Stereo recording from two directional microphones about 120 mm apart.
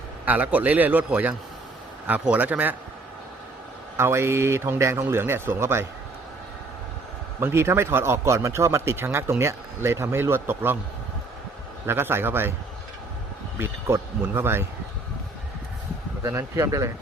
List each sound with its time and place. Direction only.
0.3 s a man's voice: 15° right (ahead or behind)
3.9 s speech: 20° right (ahead or behind)
7.3 s speech: 20° right (ahead or behind)
11.9 s speech: 20° right (ahead or behind)
13.6 s speech: 20° right (ahead or behind)
16.2 s speech: 25° right (ahead or behind)